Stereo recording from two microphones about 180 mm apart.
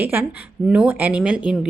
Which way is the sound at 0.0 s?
10° right (ahead or behind).